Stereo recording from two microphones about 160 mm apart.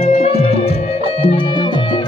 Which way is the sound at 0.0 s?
40° left (ahead or behind).